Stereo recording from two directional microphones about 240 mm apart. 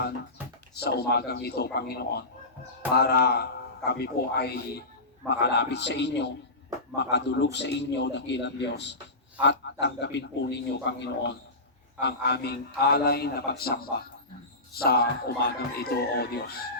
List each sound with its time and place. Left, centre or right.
0.7 s a man's voice: left